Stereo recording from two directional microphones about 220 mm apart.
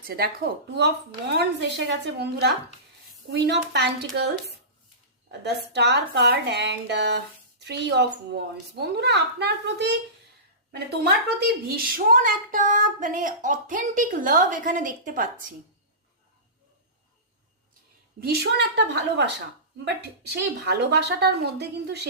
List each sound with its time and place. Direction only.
0.0 s a woman's voice: 45° right (ahead or behind)
5.3 s a woman's voice: 50° right (ahead or behind)
11.3 s speech: 40° right (ahead or behind)
18.2 s a woman's voice: 45° right (ahead or behind)